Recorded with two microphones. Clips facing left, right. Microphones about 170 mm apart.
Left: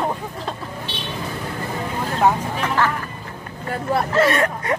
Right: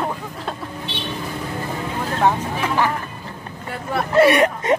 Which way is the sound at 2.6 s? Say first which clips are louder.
Right 1 dB; 15° right (ahead or behind).